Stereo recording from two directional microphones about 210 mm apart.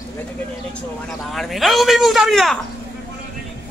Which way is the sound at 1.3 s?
Centre (ahead or behind).